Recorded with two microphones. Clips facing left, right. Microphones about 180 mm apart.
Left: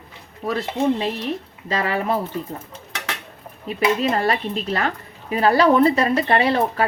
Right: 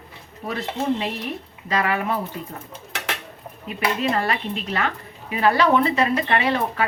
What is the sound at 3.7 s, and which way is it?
A woman's voice, 35° left (ahead or behind).